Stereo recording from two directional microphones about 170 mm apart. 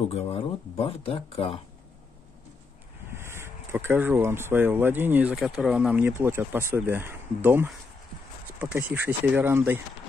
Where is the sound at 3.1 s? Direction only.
15° right (ahead or behind).